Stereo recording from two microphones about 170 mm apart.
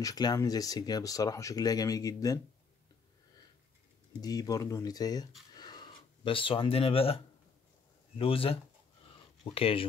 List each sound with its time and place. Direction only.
0.0 s speech: 20° left (ahead or behind)
4.2 s speech: 20° left (ahead or behind)
5.5 s a sound: 25° left (ahead or behind)
8.2 s speech: 35° left (ahead or behind)